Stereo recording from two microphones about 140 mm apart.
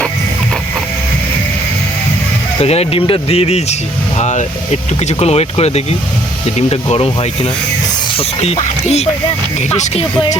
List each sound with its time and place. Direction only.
2.6 s speech: 45° left (ahead or behind)